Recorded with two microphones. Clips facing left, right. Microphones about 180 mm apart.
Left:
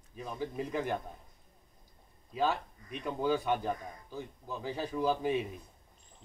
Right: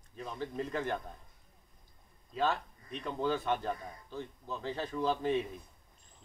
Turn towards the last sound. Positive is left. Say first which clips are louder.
# left 1 dB
turn(degrees=10)  # may be behind; listen again after turning